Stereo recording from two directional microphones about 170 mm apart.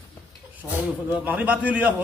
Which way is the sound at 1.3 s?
10° right (ahead or behind).